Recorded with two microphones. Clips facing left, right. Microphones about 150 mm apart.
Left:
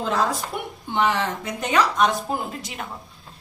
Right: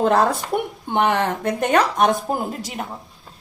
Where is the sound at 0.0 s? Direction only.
55° right (ahead or behind).